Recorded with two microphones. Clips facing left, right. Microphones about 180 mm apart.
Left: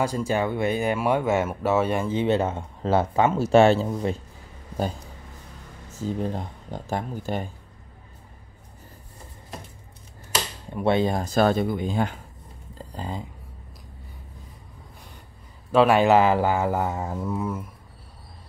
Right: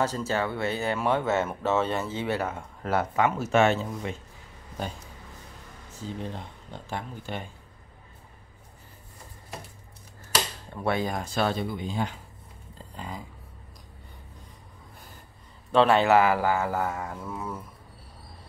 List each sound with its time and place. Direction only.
0.0 s speech: 15° left (ahead or behind); by 4.2 s 35° left (ahead or behind)
6.2 s speech: 40° left (ahead or behind)
10.7 s speech: 25° left (ahead or behind)
11.2 s speech: 45° left (ahead or behind)
12.9 s speech: 30° left (ahead or behind)
15.7 s speech: 10° left (ahead or behind)